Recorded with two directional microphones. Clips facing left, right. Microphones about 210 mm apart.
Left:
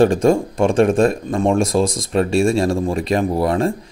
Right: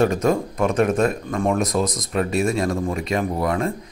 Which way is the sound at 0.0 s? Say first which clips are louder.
Left 5 dB; 30° left (ahead or behind).